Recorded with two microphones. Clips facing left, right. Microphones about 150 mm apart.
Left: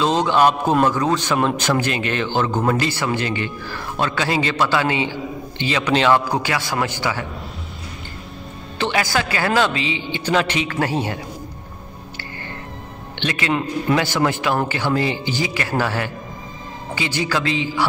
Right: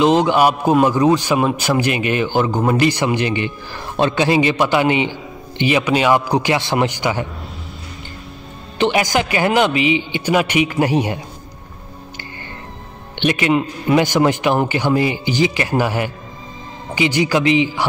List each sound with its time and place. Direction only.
0.0 s a man's voice: 15° right (ahead or behind)
8.7 s a man's voice: 15° right (ahead or behind)
13.2 s a man's voice: 20° right (ahead or behind)